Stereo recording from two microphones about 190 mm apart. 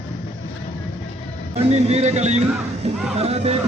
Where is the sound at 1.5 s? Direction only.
35° right (ahead or behind).